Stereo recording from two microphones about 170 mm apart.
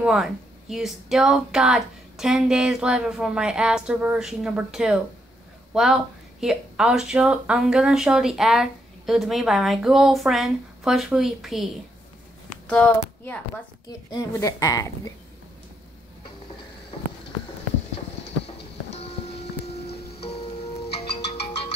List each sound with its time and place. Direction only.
0.0 s speech: centre (ahead or behind)
12.6 s a sound: 10° left (ahead or behind)
14.1 s a woman's voice: 20° left (ahead or behind)
18.9 s music: 35° left (ahead or behind)